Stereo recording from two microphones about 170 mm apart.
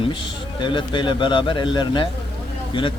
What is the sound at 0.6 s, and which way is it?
A man's voice, 30° left (ahead or behind).